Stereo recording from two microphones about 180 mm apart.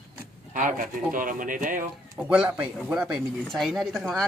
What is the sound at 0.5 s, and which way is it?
Speech, 50° right (ahead or behind).